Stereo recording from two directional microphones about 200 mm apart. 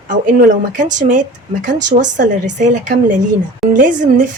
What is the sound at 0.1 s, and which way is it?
A woman's voice, 40° right (ahead or behind).